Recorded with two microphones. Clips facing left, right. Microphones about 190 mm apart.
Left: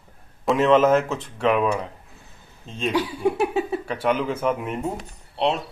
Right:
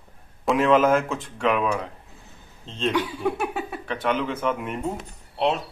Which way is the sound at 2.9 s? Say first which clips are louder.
Left 6 dB; 30° left (ahead or behind).